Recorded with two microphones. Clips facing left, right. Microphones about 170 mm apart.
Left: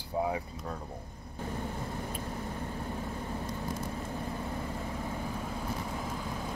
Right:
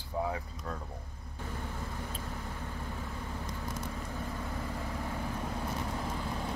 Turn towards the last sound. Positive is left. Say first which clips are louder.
# right 1 dB
turn(degrees=5)  # may be behind; listen again after turning